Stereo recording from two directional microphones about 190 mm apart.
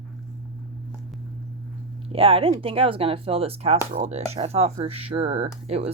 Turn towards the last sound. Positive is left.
turn(degrees=-35)  # may be behind; listen again after turning